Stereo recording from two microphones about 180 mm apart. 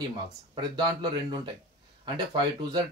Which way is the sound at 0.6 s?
25° right (ahead or behind).